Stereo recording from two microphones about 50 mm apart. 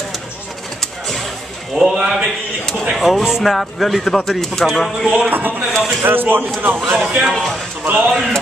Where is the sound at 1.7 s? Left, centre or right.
Centre.